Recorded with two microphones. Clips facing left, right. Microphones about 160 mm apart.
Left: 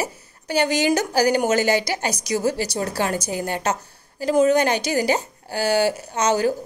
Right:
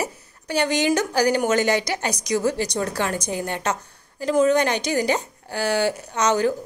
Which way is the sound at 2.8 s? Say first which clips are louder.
Left 3 dB; 35° left (ahead or behind).